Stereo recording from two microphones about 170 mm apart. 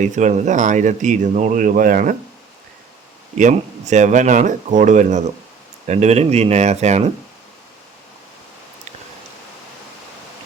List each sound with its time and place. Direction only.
0.0 s speech: 45° right (ahead or behind)
3.3 s speech: 45° right (ahead or behind)